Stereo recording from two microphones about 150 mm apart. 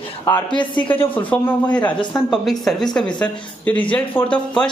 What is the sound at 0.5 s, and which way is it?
Speech, 30° left (ahead or behind).